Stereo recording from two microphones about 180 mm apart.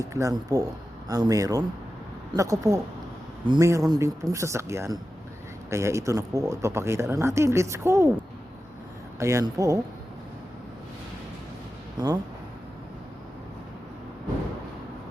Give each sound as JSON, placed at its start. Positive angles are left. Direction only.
{"t": 0.0, "sound": "speech", "side_deg": -20}
{"t": 9.1, "sound": "speech", "side_deg": -15}
{"t": 11.9, "sound": "speech", "side_deg": -20}